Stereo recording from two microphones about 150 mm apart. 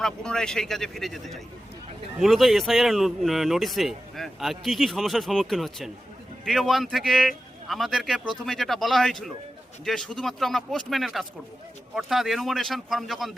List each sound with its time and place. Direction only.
0.0 s speech: 5° left (ahead or behind)